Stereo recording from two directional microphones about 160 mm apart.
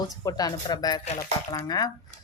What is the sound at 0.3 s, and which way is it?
Speech, 25° left (ahead or behind).